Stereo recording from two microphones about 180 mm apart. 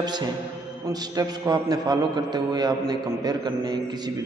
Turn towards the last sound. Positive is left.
turn(degrees=-20)  # may be behind; listen again after turning